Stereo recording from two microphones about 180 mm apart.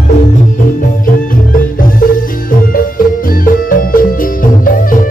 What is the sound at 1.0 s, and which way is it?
Music, 50° left (ahead or behind).